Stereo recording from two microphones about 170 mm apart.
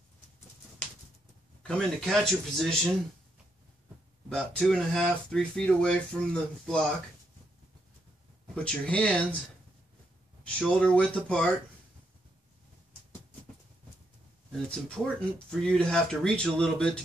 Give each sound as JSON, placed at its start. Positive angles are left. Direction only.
{"t": 1.6, "sound": "speech", "side_deg": 5}
{"t": 4.3, "sound": "speech", "side_deg": 5}
{"t": 8.6, "sound": "speech", "side_deg": 5}
{"t": 10.4, "sound": "speech", "side_deg": 5}
{"t": 15.0, "sound": "speech", "side_deg": 0}